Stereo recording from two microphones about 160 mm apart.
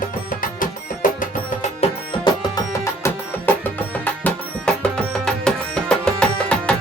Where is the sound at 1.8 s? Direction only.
40° left (ahead or behind).